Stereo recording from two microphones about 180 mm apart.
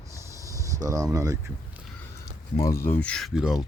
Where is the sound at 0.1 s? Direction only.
15° right (ahead or behind).